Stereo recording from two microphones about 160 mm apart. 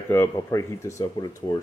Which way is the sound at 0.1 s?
20° left (ahead or behind).